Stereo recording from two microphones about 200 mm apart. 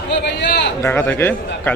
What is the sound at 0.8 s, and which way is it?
Speech, 10° left (ahead or behind).